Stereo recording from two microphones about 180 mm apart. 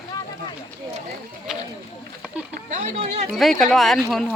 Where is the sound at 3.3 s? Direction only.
Centre (ahead or behind).